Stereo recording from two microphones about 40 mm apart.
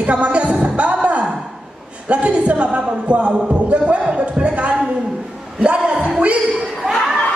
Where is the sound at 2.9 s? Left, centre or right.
Right.